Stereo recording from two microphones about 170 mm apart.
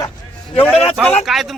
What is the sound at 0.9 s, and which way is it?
Speech, centre (ahead or behind).